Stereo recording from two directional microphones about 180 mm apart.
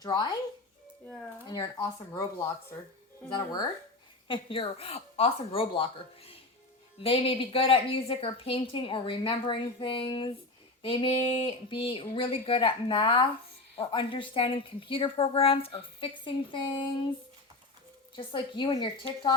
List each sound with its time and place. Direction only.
0.0 s a woman's voice: 25° left (ahead or behind)
3.2 s a woman's voice: 25° left (ahead or behind)
18.2 s a woman's voice: 25° left (ahead or behind)